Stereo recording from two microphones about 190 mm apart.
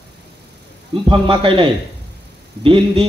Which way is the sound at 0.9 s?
25° right (ahead or behind).